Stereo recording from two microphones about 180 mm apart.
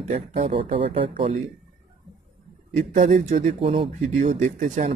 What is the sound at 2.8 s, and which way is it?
Speech, 40° right (ahead or behind).